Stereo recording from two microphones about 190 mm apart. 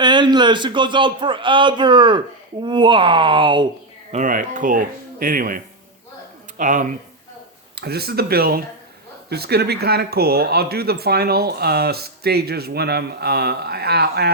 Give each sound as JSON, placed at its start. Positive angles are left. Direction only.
{"t": 0.0, "sound": "a man's voice", "side_deg": -25}
{"t": 4.1, "sound": "speech", "side_deg": -45}
{"t": 7.8, "sound": "speech", "side_deg": -55}